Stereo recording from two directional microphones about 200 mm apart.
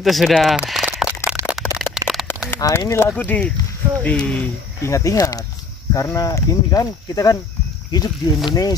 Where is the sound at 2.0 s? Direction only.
20° right (ahead or behind).